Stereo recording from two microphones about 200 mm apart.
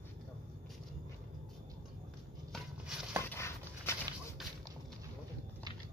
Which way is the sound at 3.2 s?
10° left (ahead or behind).